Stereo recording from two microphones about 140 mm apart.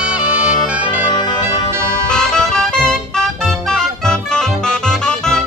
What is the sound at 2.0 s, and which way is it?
Music, 5° left (ahead or behind).